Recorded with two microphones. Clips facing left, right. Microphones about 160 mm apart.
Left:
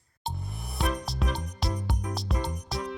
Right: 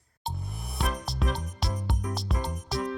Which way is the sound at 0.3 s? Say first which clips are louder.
Even; centre (ahead or behind).